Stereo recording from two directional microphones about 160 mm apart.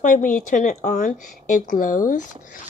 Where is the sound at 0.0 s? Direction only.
55° left (ahead or behind).